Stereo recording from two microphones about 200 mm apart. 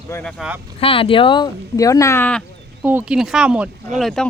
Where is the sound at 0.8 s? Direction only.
25° left (ahead or behind); by 2.4 s 10° left (ahead or behind).